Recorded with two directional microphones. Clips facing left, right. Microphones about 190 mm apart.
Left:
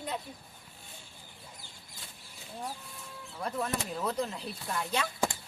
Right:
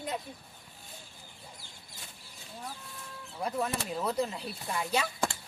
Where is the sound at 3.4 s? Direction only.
10° right (ahead or behind).